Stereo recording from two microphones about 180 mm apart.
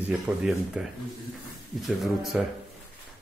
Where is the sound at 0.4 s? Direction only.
5° right (ahead or behind).